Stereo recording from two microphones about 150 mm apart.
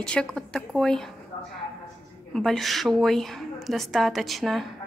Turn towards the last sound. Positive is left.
turn(degrees=0)  # may be behind; listen again after turning